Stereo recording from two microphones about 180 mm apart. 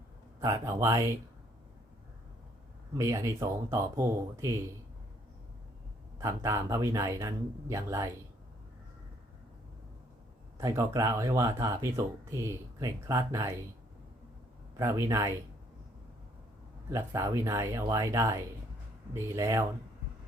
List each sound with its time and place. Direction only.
0.3 s a man's voice: 20° right (ahead or behind)
2.9 s speech: 20° right (ahead or behind)
6.1 s speech: 15° right (ahead or behind)
10.6 s speech: 15° right (ahead or behind)
14.8 s speech: 15° right (ahead or behind)
16.9 s speech: 15° right (ahead or behind)